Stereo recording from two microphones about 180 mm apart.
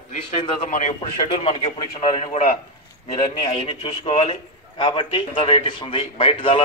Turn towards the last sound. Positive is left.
turn(degrees=30)  # may be behind; listen again after turning